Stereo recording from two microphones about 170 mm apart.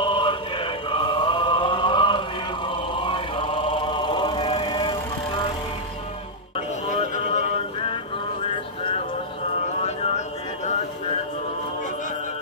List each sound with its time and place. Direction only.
0.0 s music: 30° left (ahead or behind)
2.7 s chant: 30° left (ahead or behind)
6.9 s music: 40° left (ahead or behind)
9.8 s a sound: 40° left (ahead or behind)